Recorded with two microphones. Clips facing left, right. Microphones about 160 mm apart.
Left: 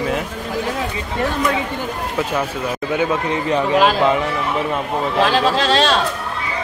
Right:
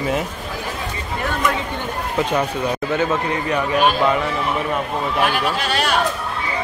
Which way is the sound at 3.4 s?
25° left (ahead or behind).